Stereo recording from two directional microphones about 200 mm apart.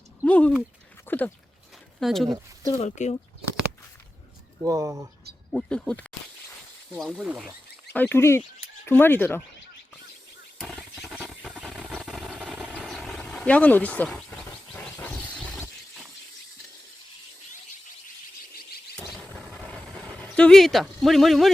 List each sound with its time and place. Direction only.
0.3 s speech: 5° left (ahead or behind)
1.0 s dog: 10° left (ahead or behind)
2.0 s speech: centre (ahead or behind)
2.7 s speech: 35° left (ahead or behind)
4.7 s speech: 15° right (ahead or behind)
5.5 s speech: 5° left (ahead or behind)
7.9 s speech: 10° left (ahead or behind)
10.6 s vehicle: centre (ahead or behind)
18.9 s a sound: centre (ahead or behind)